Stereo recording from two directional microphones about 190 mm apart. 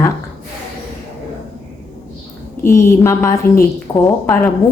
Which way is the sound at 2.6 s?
15° left (ahead or behind).